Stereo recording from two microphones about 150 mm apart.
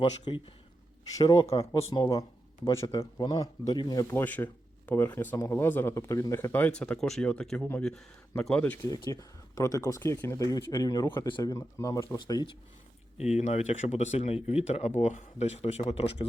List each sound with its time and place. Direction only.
0.0 s speech: 35° left (ahead or behind)
1.1 s speech: 25° left (ahead or behind)
4.1 s speech: 10° left (ahead or behind)
9.0 s speech: 25° left (ahead or behind)
11.3 s speech: 30° left (ahead or behind)
11.5 s speech: 20° left (ahead or behind)
13.1 s speech: 50° left (ahead or behind)